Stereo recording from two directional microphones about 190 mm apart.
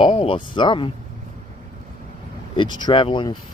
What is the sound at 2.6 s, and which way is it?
Speech, 25° left (ahead or behind).